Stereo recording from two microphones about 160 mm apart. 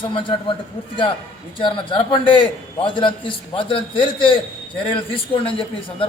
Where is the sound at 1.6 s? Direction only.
30° left (ahead or behind).